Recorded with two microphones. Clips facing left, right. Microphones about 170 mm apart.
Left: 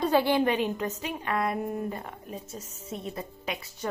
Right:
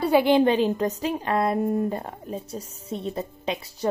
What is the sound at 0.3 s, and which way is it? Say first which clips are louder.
Speech: right 6 dB; 30° right (ahead or behind).